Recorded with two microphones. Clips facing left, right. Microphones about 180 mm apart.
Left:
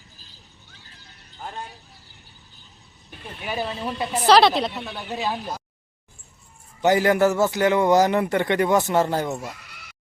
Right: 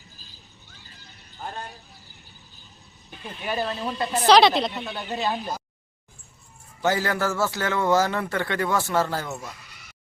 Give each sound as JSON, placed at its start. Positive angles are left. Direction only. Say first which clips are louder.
{"t": 3.4, "sound": "speech", "louder": "even", "side_deg": 5}
{"t": 6.8, "sound": "speech", "louder": "left 6 dB", "side_deg": 20}